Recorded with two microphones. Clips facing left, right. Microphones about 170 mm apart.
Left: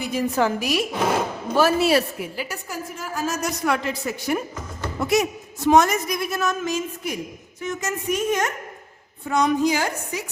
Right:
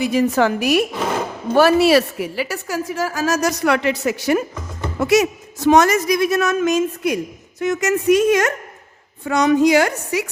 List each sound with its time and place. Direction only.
0.0 s a woman's voice: 85° right